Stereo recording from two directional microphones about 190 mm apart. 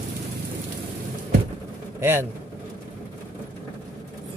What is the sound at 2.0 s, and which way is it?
Speech, 10° right (ahead or behind).